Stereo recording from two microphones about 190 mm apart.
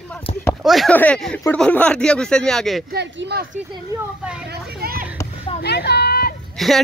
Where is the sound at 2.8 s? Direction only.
60° right (ahead or behind).